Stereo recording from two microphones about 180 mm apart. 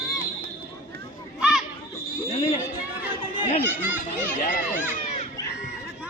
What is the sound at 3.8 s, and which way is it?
Speech, 10° right (ahead or behind).